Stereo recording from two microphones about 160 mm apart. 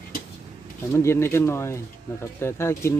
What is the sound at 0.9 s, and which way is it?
Speech, 15° left (ahead or behind).